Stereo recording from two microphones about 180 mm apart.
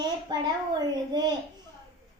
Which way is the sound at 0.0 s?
25° right (ahead or behind).